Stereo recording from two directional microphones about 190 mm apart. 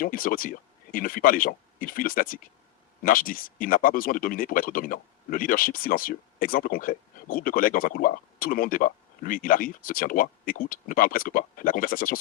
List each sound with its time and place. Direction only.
0.0 s speech: 45° left (ahead or behind)